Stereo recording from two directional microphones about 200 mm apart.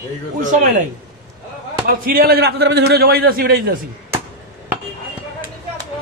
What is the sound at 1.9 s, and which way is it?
A man's voice, 45° right (ahead or behind).